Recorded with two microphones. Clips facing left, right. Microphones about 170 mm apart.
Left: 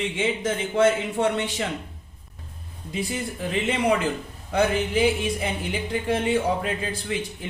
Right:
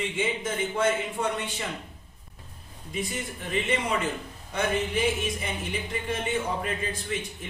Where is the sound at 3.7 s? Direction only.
80° left.